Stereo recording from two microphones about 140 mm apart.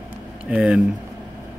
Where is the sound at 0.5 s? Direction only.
5° right (ahead or behind).